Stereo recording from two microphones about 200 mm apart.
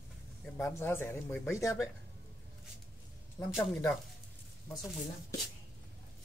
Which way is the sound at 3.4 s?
15° left (ahead or behind).